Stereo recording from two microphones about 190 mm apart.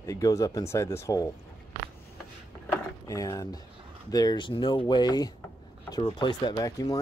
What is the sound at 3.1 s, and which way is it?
Speech, 15° left (ahead or behind).